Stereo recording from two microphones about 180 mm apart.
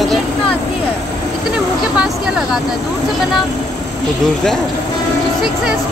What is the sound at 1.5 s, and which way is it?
Speech, 5° right (ahead or behind).